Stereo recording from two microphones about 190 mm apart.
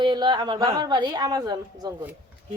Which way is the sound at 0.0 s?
25° right (ahead or behind).